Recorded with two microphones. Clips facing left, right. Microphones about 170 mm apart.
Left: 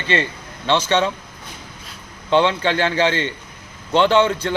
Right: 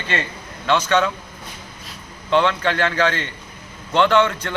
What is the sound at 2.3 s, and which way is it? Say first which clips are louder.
A man's voice: left 1 dB; 30° left (ahead or behind).